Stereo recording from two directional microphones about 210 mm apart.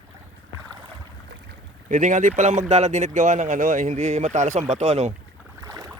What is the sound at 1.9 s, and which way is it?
Speech, 35° right (ahead or behind).